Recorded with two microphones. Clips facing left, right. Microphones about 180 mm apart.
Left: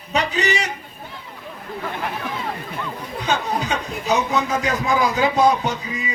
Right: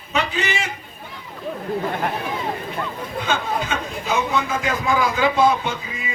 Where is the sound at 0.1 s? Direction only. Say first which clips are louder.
Left 2 dB; 40° left (ahead or behind).